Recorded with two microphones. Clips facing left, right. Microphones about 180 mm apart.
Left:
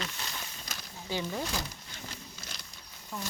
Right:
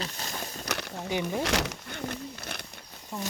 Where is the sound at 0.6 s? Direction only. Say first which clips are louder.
Right 10 dB; 70° right (ahead or behind).